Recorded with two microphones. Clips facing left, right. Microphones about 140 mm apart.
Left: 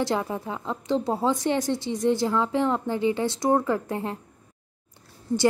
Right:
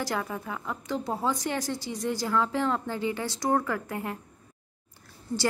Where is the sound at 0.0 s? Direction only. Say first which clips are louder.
Left 5 dB; 25° left (ahead or behind).